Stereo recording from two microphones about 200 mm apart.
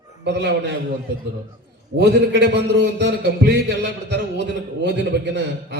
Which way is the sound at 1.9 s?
60° right (ahead or behind).